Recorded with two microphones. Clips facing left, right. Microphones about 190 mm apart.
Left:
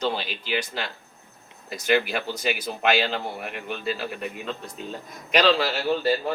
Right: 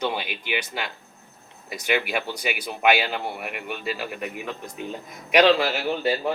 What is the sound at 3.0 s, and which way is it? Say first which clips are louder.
Speech: left 1 dB; 10° right (ahead or behind).